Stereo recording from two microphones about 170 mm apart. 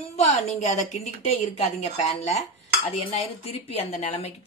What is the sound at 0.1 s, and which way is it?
Speech, 40° left (ahead or behind).